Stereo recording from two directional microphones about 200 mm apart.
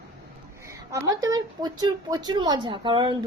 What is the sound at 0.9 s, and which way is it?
Speech, 15° right (ahead or behind).